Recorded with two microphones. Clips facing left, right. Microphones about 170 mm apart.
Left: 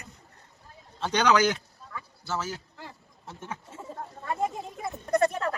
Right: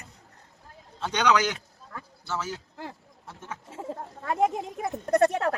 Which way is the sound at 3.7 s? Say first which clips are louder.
Right 3 dB; 85° right.